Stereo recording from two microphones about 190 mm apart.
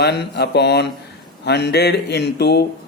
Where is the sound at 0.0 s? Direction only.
60° left (ahead or behind).